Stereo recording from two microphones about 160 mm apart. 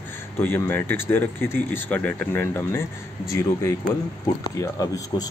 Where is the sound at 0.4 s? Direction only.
15° left (ahead or behind).